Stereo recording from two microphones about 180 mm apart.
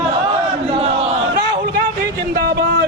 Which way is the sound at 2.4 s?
60° right (ahead or behind).